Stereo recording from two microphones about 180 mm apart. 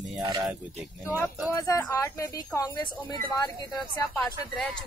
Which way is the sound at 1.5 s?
20° left (ahead or behind).